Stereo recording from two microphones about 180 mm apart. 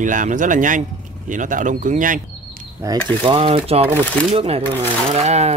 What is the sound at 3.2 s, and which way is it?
Speech, 30° right (ahead or behind).